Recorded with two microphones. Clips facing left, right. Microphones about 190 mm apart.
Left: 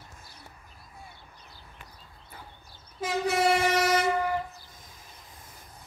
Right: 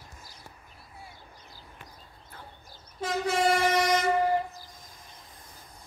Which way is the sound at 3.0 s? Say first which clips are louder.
Left 1 dB; 5° left (ahead or behind).